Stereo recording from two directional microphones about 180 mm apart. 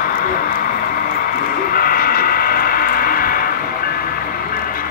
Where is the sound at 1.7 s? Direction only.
55° left (ahead or behind).